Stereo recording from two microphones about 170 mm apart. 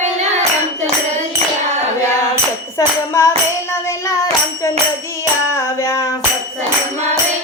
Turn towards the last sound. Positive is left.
turn(degrees=15)  # may be behind; listen again after turning